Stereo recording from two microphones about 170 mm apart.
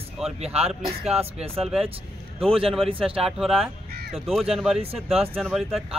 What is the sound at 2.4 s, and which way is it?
Speech, 35° right (ahead or behind).